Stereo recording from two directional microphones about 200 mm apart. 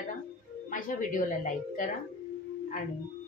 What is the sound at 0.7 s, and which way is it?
A woman's voice, 40° left (ahead or behind).